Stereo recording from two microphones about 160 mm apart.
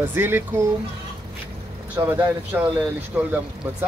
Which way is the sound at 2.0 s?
20° right (ahead or behind).